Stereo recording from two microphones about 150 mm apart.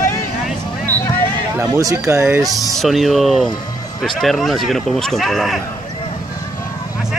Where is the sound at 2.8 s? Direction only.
Centre (ahead or behind).